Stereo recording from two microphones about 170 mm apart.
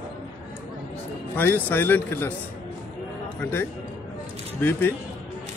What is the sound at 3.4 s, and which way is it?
A man's voice, 15° left (ahead or behind).